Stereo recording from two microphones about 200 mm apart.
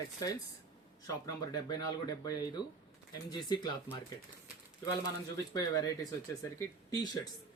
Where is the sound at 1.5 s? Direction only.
20° left (ahead or behind).